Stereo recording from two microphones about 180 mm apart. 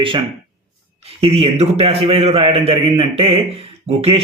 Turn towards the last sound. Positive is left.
turn(degrees=-35)  # may be behind; listen again after turning